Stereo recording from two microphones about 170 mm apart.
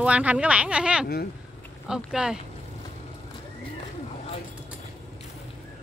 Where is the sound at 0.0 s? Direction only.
10° right (ahead or behind).